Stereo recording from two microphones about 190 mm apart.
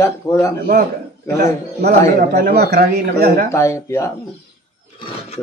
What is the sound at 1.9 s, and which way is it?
A man's voice, 45° right (ahead or behind).